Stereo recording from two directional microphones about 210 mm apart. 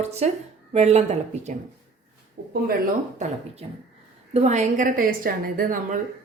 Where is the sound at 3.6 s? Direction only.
30° right (ahead or behind).